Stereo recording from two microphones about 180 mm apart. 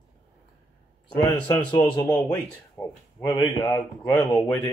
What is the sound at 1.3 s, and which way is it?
A man's voice, 10° left (ahead or behind).